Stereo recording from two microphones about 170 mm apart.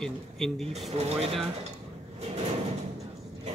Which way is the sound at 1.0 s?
35° right (ahead or behind).